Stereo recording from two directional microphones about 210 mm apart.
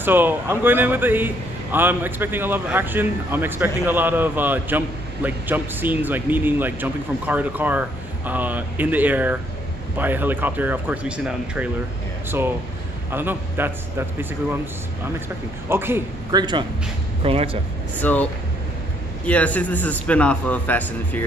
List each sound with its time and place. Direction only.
0.0 s a man's voice: 10° right (ahead or behind)
13.1 s a man's voice: 10° right (ahead or behind)
15.7 s a man's voice: 10° right (ahead or behind); by 17.6 s 25° right (ahead or behind)
18.0 s a man's voice: 5° left (ahead or behind)